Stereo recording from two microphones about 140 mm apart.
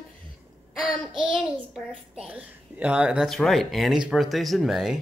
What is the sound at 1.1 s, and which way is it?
Child singing, 40° right (ahead or behind).